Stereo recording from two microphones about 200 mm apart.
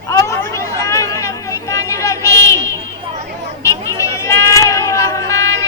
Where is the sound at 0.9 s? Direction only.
15° left (ahead or behind).